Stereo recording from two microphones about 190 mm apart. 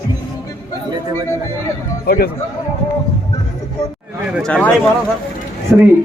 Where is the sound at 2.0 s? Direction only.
55° left (ahead or behind).